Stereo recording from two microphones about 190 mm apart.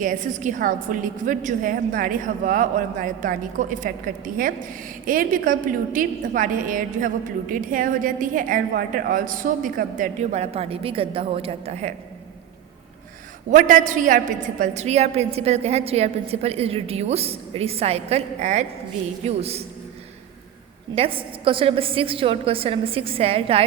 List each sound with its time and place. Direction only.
0.0 s a woman's voice: 40° right (ahead or behind)
13.5 s a woman's voice: 45° right (ahead or behind)
20.9 s a woman's voice: 30° right (ahead or behind)